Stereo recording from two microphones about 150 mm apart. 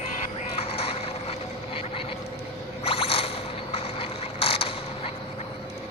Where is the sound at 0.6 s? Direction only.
40° left (ahead or behind).